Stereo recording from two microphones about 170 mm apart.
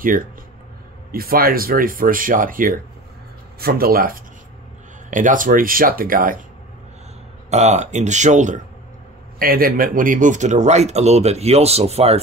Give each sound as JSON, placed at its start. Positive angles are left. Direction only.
{"t": 1.1, "sound": "speech", "side_deg": -60}
{"t": 7.4, "sound": "speech", "side_deg": -40}
{"t": 9.4, "sound": "speech", "side_deg": -60}